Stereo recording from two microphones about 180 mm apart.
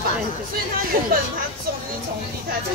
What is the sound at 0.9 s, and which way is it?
Speech, 55° right (ahead or behind).